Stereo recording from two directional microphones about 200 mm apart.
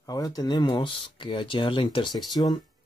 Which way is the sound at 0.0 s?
20° left (ahead or behind).